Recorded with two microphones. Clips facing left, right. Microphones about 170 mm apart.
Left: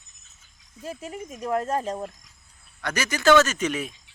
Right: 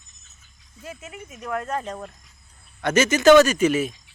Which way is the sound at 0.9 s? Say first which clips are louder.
Left 4 dB; 35° left (ahead or behind).